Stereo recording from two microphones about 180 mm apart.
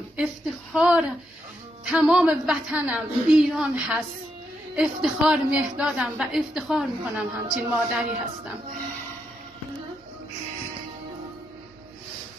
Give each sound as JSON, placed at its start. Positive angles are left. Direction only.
{"t": 0.2, "sound": "a woman's voice", "side_deg": -5}